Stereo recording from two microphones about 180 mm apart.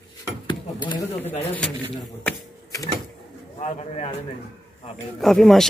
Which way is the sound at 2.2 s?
20° left (ahead or behind).